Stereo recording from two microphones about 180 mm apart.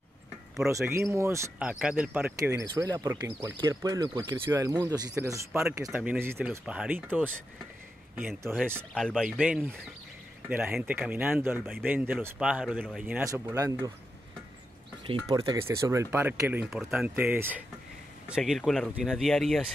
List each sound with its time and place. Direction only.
0.7 s speech: 15° right (ahead or behind)
2.3 s speech: 20° right (ahead or behind)
8.9 s speech: centre (ahead or behind); by 13.9 s 15° right (ahead or behind)
15.2 s speech: 20° right (ahead or behind); by 19.6 s centre (ahead or behind)